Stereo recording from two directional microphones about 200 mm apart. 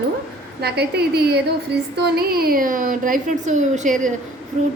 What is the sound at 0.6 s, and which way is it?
A woman's voice, 55° right (ahead or behind).